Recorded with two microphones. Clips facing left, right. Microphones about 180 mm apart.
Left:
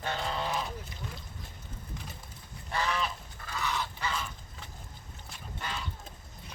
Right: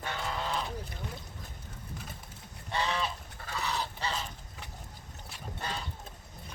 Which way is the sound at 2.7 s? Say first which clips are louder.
Even; 25° right (ahead or behind).